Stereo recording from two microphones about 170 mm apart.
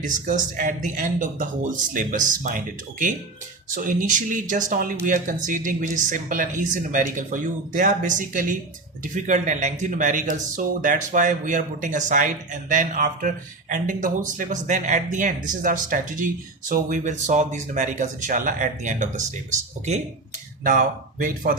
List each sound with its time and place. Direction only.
0.0 s speech: 50° right (ahead or behind)
3.8 s speech: 50° right (ahead or behind)
20.7 s speech: 55° right (ahead or behind)